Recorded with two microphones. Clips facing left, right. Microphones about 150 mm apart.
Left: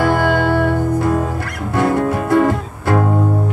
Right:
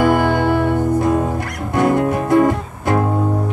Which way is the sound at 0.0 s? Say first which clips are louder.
Right 1 dB; 20° right (ahead or behind).